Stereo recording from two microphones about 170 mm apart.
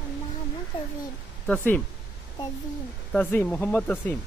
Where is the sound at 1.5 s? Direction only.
10° left (ahead or behind).